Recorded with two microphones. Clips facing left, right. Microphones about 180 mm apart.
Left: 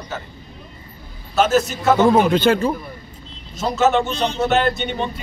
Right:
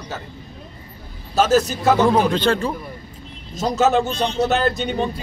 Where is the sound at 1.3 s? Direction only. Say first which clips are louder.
Even; 35° right (ahead or behind).